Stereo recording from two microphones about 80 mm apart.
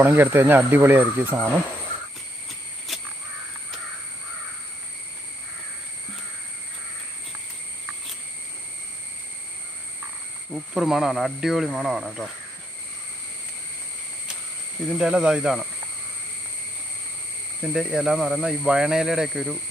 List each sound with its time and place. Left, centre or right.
0.0 s speech: right
2.9 s crow: centre
10.5 s speech: centre
14.9 s speech: centre
17.6 s speech: centre